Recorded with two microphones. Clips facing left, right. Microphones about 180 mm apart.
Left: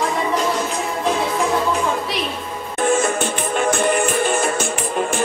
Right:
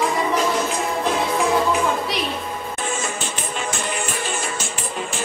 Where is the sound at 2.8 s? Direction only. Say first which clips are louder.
Left 12 dB; 55° left (ahead or behind).